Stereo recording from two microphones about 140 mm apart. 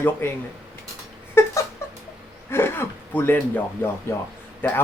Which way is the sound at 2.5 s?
15° left (ahead or behind).